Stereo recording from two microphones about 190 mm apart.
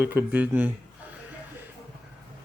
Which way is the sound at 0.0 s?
10° right (ahead or behind).